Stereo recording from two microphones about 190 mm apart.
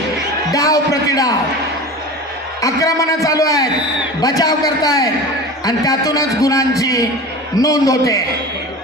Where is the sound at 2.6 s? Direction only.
15° left (ahead or behind).